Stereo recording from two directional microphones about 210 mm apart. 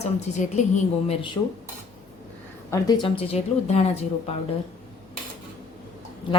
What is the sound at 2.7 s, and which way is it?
A woman's voice, 20° left (ahead or behind).